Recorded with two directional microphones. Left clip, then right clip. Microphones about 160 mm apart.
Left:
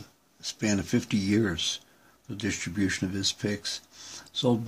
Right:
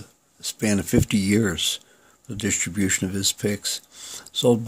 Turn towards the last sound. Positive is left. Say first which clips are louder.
# right 7 dB
turn(degrees=-50)  # may be behind; listen again after turning